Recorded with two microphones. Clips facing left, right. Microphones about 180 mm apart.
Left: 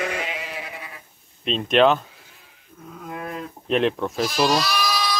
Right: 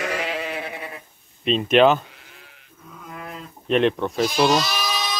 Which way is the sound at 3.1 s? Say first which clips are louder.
Left 5 dB; 55° left (ahead or behind).